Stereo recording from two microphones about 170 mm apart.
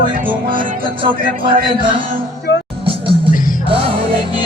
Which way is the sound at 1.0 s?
30° right (ahead or behind).